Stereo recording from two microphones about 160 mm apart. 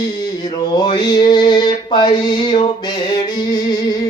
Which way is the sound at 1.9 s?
30° left (ahead or behind).